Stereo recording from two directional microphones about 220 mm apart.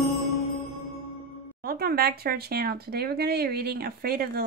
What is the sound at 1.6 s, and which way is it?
Speech, 45° right (ahead or behind).